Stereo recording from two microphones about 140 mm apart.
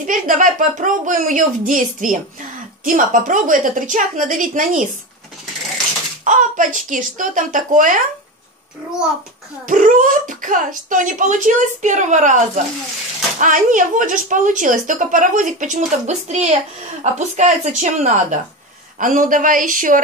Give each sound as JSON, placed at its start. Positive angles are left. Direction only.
{"t": 0.0, "sound": "speech", "side_deg": -70}
{"t": 6.2, "sound": "speech", "side_deg": -65}
{"t": 9.7, "sound": "speech", "side_deg": -65}
{"t": 18.9, "sound": "speech", "side_deg": -70}